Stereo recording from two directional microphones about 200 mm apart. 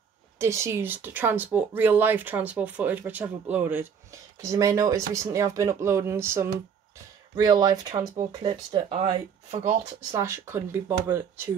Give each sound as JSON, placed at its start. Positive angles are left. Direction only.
{"t": 0.4, "sound": "speech", "side_deg": -15}
{"t": 10.1, "sound": "speech", "side_deg": -15}